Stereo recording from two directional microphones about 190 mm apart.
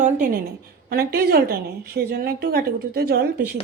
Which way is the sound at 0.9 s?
55° right (ahead or behind).